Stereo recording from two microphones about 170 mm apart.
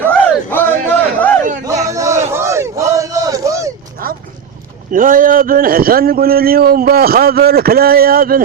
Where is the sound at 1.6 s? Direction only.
20° right (ahead or behind).